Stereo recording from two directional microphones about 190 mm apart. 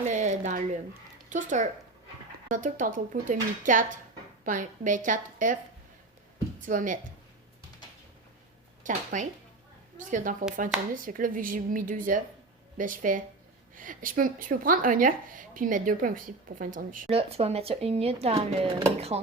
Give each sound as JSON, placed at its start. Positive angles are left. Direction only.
{"t": 0.0, "sound": "a sound", "side_deg": -40}
{"t": 1.3, "sound": "speech", "side_deg": -40}
{"t": 6.6, "sound": "speech", "side_deg": -45}
{"t": 8.8, "sound": "speech", "side_deg": -45}
{"t": 17.1, "sound": "speech", "side_deg": -30}